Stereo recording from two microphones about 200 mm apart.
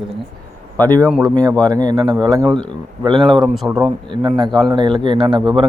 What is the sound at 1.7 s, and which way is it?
A man's voice, 20° right (ahead or behind).